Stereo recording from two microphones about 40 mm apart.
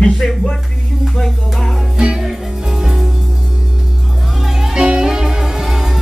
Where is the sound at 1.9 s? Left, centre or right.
Centre.